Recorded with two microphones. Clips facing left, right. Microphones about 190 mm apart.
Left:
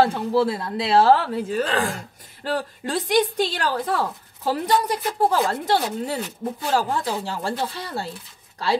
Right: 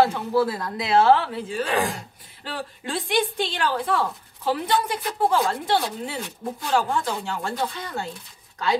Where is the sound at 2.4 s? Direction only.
45° left (ahead or behind).